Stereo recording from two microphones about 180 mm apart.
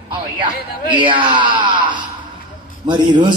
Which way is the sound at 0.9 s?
25° right (ahead or behind).